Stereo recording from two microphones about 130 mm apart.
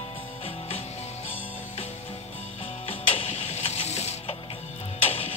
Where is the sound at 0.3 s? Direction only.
50° left (ahead or behind).